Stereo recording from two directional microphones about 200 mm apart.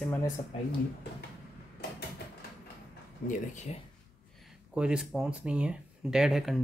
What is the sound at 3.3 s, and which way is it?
Speech, 35° left (ahead or behind).